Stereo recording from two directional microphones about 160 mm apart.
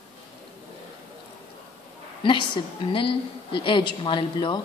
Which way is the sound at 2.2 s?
30° left (ahead or behind).